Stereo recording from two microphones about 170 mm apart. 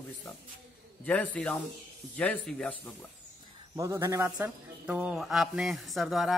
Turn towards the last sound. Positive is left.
turn(degrees=0)  # may be behind; listen again after turning